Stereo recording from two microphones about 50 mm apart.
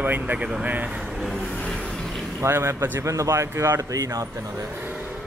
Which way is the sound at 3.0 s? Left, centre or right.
Right.